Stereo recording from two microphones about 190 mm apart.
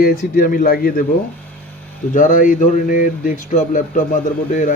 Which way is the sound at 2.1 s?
45° left (ahead or behind).